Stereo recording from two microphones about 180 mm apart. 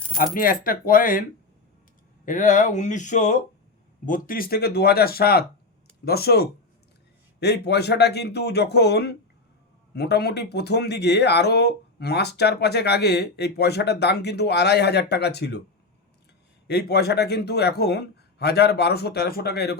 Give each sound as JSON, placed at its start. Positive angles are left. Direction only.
{"t": 0.3, "sound": "speech", "side_deg": 50}
{"t": 2.2, "sound": "speech", "side_deg": 45}
{"t": 16.6, "sound": "speech", "side_deg": 65}